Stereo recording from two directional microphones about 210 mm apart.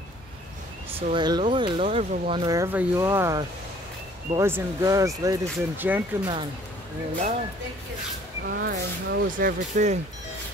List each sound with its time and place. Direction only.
0.9 s speech: 20° right (ahead or behind)
8.5 s speech: 50° right (ahead or behind)